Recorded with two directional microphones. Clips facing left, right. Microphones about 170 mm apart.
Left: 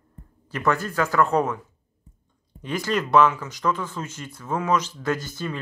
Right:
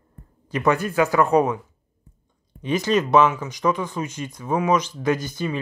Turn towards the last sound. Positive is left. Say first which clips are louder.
# right 4 dB
turn(degrees=-15)  # may be behind; listen again after turning